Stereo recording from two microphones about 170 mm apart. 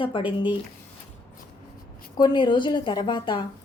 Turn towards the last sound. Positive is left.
turn(degrees=25)  # may be behind; listen again after turning